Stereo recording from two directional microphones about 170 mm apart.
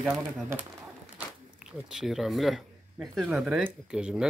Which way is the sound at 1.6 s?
5° right (ahead or behind).